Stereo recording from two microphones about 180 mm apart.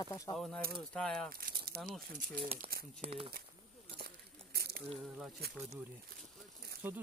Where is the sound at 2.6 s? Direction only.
55° right (ahead or behind).